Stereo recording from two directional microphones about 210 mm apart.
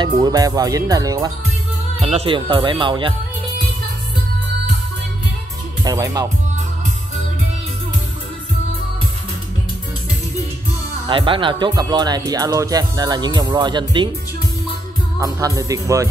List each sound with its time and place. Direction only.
0.2 s speech: 20° right (ahead or behind)
2.0 s speech: 30° right (ahead or behind)
5.9 s speech: 15° right (ahead or behind)
11.1 s speech: 25° right (ahead or behind)
15.1 s speech: 15° right (ahead or behind)